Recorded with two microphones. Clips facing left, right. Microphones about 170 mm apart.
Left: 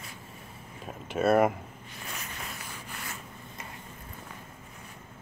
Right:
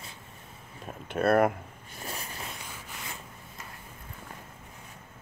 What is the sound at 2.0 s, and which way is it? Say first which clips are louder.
Zipper: right 3 dB; 35° right (ahead or behind).